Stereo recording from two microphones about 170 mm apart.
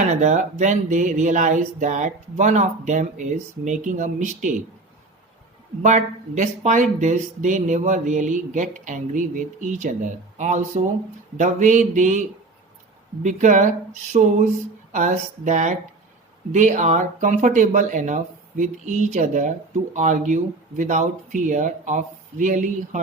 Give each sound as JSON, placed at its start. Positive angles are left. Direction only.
{"t": 0.1, "sound": "speech", "side_deg": -45}
{"t": 5.8, "sound": "speech", "side_deg": -45}
{"t": 13.2, "sound": "speech", "side_deg": -45}